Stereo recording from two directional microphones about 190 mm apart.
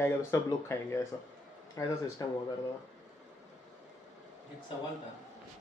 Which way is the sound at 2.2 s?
20° left (ahead or behind).